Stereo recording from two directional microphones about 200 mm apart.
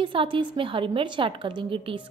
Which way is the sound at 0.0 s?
25° right (ahead or behind).